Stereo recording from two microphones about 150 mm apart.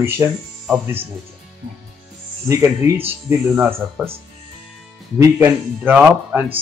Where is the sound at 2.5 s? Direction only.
20° right (ahead or behind).